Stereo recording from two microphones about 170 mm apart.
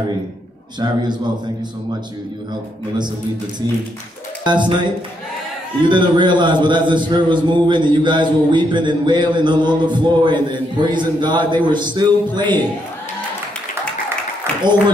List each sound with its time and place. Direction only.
0.7 s a man's voice: 25° right (ahead or behind)
4.5 s a man's voice: 25° right (ahead or behind)
5.9 s a man's voice: 30° right (ahead or behind)